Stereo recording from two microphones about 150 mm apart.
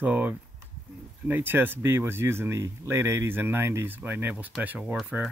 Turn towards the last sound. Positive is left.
turn(degrees=-10)  # may be behind; listen again after turning